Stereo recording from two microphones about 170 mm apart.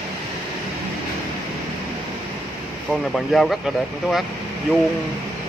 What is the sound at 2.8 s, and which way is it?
Speech, centre (ahead or behind).